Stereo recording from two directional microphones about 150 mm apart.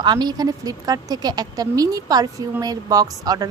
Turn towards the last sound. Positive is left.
turn(degrees=-25)  # may be behind; listen again after turning